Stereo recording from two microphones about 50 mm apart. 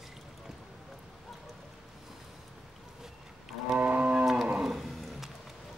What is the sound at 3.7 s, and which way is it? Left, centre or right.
Cattle, right.